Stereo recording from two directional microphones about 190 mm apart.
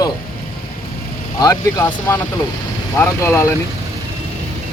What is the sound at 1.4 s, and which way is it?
Speech, 20° left (ahead or behind).